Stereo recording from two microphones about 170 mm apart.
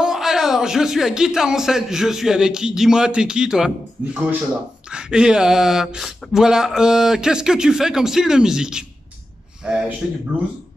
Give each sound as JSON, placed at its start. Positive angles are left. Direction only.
{"t": 0.0, "sound": "a man's voice", "side_deg": -5}